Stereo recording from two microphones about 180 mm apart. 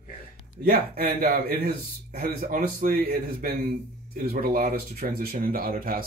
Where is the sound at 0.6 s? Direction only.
60° right (ahead or behind).